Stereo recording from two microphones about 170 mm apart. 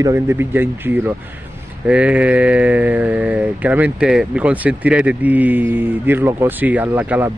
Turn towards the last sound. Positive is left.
turn(degrees=-10)  # may be behind; listen again after turning